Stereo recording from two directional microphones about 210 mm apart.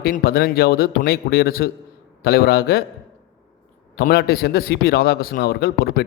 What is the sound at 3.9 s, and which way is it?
A man's voice, 50° left (ahead or behind).